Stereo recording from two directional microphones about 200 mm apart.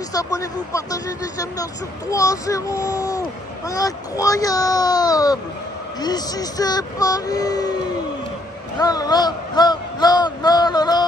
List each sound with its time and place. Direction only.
0.1 s speech: 15° left (ahead or behind)